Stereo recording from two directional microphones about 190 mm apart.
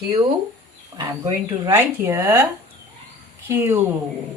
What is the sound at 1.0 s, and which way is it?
Speech, 20° right (ahead or behind).